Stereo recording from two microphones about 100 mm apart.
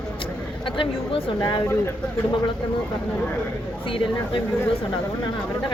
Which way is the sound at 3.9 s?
60° left (ahead or behind).